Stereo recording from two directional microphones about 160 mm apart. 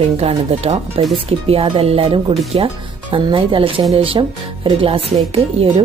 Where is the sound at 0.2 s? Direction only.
40° right (ahead or behind).